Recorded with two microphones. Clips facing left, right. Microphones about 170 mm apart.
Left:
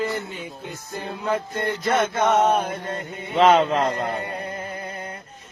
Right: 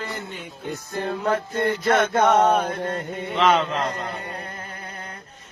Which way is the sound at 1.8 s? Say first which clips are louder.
Right 1 dB; 50° right (ahead or behind).